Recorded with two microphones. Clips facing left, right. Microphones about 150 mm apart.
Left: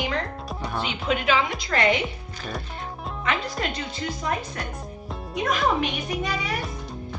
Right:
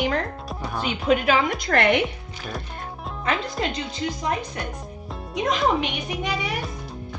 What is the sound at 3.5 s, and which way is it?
Speech, 20° right (ahead or behind).